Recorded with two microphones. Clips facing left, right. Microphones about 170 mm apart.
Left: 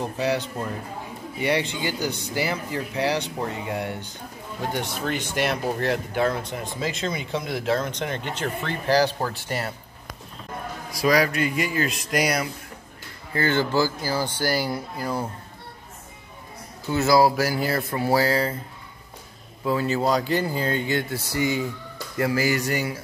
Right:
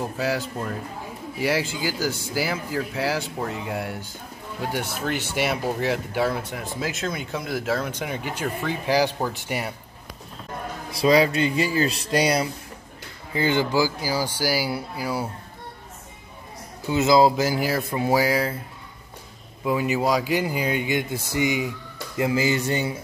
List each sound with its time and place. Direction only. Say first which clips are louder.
0.0 s speech: left 1 dB; 5° right (ahead or behind)
10.9 s speech: right 3 dB; 25° right (ahead or behind)
13.3 s speech: right 1 dB; 15° right (ahead or behind)
16.9 s speech: right 1 dB; 20° right (ahead or behind)
19.6 s speech: even; 15° right (ahead or behind)